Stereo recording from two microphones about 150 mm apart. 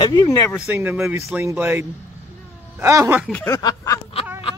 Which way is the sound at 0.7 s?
15° right (ahead or behind).